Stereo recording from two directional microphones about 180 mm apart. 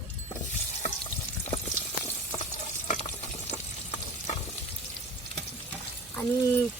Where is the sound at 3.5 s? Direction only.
40° left (ahead or behind).